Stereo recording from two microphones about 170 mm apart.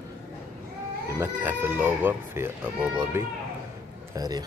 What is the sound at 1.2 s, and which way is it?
Speech, 10° right (ahead or behind).